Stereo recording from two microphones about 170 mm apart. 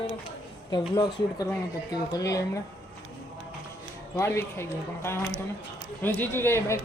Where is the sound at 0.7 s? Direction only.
20° left (ahead or behind).